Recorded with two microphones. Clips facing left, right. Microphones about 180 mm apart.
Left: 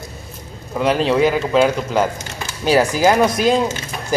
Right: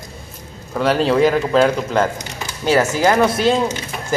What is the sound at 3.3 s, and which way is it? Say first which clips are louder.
Speech: even; 30° right (ahead or behind).